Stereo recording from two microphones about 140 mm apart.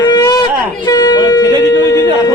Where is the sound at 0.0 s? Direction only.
30° left (ahead or behind).